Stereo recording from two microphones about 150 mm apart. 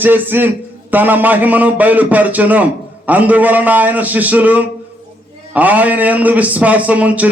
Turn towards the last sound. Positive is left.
turn(degrees=-10)  # may be behind; listen again after turning